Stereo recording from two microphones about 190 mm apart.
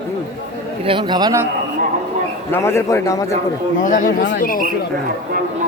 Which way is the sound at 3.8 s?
45° left (ahead or behind).